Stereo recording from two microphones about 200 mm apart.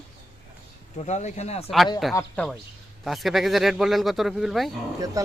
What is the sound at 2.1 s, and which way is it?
Speech, 5° left (ahead or behind).